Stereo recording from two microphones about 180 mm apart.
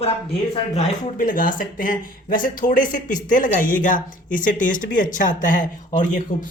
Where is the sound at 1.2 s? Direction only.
50° left (ahead or behind).